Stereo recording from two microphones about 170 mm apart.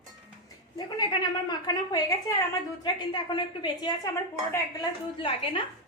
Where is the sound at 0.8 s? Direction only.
25° left (ahead or behind).